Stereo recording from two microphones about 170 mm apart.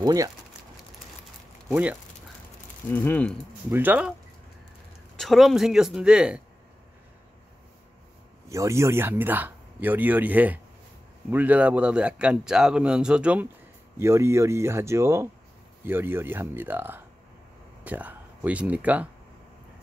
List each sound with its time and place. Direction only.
0.0 s speech: 20° right (ahead or behind)
1.7 s speech: 10° right (ahead or behind)
2.9 s speech: 10° left (ahead or behind)
3.7 s speech: 10° right (ahead or behind)
5.1 s speech: centre (ahead or behind)
8.5 s speech: 15° right (ahead or behind)